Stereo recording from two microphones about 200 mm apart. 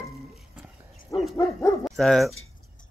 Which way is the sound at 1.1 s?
15° left (ahead or behind).